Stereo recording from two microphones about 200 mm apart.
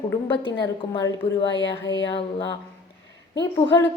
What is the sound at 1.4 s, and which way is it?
Speech, 65° left (ahead or behind).